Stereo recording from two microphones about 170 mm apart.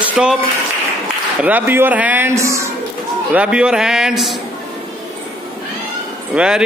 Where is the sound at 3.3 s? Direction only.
5° right (ahead or behind).